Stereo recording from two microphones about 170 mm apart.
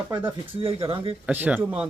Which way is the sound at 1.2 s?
10° right (ahead or behind).